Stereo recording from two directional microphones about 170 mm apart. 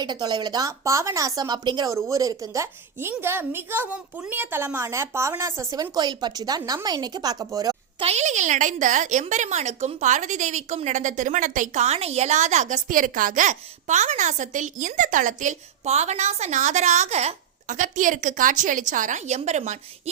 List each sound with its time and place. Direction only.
0.0 s speech: 25° right (ahead or behind)
8.0 s speech: 40° right (ahead or behind)